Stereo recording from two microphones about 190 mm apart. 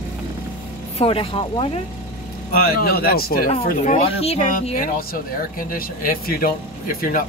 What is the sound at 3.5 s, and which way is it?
Speech, 30° left (ahead or behind).